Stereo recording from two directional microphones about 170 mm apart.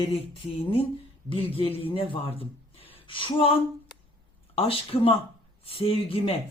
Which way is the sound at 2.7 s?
30° left (ahead or behind).